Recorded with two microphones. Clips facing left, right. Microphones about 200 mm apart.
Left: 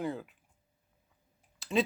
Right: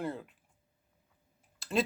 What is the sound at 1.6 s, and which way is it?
Typing, centre (ahead or behind).